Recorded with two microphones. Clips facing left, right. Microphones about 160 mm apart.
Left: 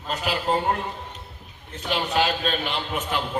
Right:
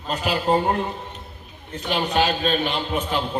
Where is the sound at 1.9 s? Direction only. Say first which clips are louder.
Right 2 dB; 20° right (ahead or behind).